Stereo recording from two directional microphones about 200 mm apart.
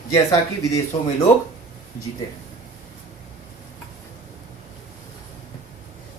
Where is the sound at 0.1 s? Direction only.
15° left (ahead or behind).